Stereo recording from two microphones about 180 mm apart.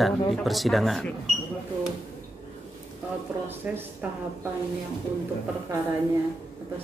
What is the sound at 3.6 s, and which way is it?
Speech, 10° right (ahead or behind).